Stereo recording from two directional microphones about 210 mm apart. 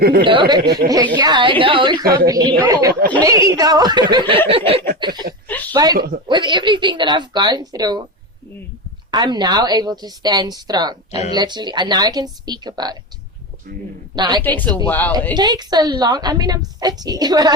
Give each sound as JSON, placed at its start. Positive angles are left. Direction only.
{"t": 0.0, "sound": "speech", "side_deg": -50}
{"t": 0.3, "sound": "a woman's voice", "side_deg": -20}
{"t": 5.5, "sound": "a sound", "side_deg": 10}
{"t": 5.7, "sound": "a woman's voice", "side_deg": -20}
{"t": 9.1, "sound": "a woman's voice", "side_deg": -20}
{"t": 14.2, "sound": "a woman's voice", "side_deg": -20}
{"t": 14.4, "sound": "speech", "side_deg": 10}
{"t": 15.3, "sound": "a woman's voice", "side_deg": -20}